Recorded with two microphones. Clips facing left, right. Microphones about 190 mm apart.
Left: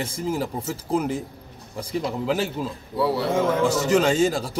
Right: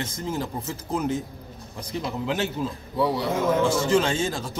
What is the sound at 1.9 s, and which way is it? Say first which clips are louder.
Speech: left 3 dB; 5° left (ahead or behind).